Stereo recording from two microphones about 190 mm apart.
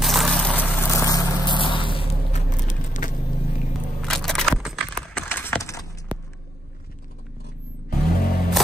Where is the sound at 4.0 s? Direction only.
Centre (ahead or behind).